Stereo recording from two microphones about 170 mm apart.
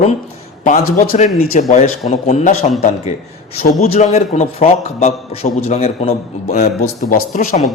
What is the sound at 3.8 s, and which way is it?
A man's voice, 40° left (ahead or behind).